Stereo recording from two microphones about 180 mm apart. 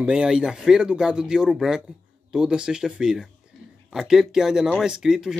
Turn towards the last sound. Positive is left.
turn(degrees=-5)  # may be behind; listen again after turning